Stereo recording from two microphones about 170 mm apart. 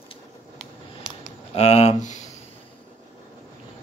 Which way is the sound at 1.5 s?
40° left (ahead or behind).